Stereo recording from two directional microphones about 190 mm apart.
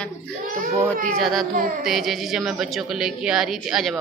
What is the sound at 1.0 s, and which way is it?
A woman's voice, centre (ahead or behind).